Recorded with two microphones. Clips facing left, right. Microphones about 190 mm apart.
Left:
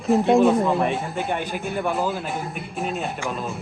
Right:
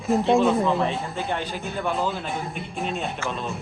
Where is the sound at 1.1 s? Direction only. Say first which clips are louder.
Left 2 dB; 15° left (ahead or behind).